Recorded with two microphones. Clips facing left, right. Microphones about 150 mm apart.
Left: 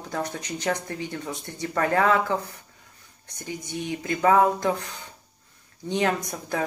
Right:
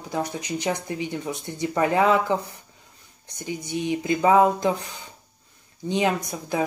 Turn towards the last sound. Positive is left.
turn(degrees=-10)  # may be behind; listen again after turning